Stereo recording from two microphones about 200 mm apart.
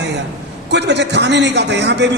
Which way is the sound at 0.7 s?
60° right (ahead or behind).